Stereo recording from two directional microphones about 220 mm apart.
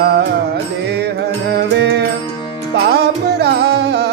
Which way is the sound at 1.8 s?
50° right (ahead or behind).